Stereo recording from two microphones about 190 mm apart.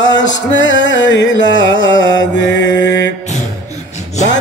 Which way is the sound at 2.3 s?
75° left (ahead or behind).